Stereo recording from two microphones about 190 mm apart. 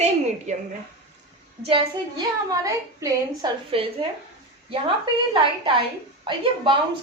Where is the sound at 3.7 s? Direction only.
30° right (ahead or behind).